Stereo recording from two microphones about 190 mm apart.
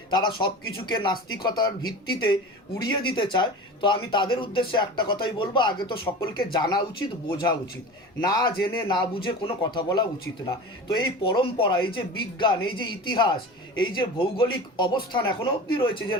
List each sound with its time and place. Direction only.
0.1 s a man's voice: 25° left (ahead or behind)
8.2 s a man's voice: 20° left (ahead or behind)